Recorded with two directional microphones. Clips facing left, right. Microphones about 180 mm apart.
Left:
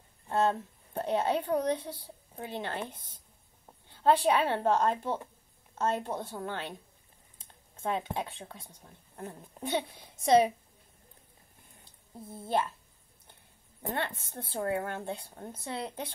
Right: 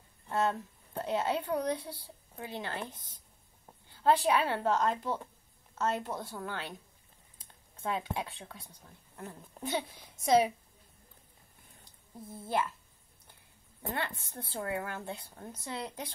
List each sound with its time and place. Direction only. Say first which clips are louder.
0.3 s a woman's voice: left 3 dB; 25° left (ahead or behind)
12.2 s a woman's voice: left 2 dB; 25° left (ahead or behind)
14.0 s a woman's voice: left 2 dB; 25° left (ahead or behind)